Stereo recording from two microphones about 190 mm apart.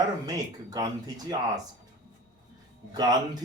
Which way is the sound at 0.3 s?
20° right (ahead or behind).